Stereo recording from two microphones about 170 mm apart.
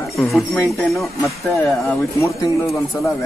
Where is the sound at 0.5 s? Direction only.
Centre (ahead or behind).